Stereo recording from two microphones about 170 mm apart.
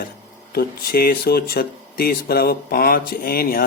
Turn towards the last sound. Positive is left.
turn(degrees=60)  # may be behind; listen again after turning